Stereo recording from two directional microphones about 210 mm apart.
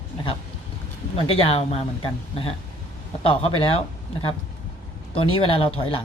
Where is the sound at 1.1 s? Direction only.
25° left (ahead or behind).